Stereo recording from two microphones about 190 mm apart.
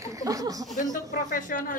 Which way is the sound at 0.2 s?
20° right (ahead or behind).